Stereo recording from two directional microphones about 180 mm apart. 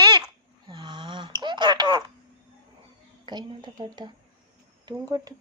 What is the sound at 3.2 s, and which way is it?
A woman's voice, 25° right (ahead or behind).